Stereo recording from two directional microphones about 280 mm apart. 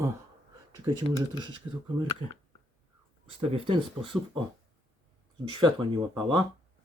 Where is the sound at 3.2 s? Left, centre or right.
Right.